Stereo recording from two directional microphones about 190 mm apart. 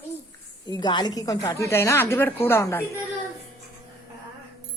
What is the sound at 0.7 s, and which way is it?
A woman's voice, 25° left (ahead or behind).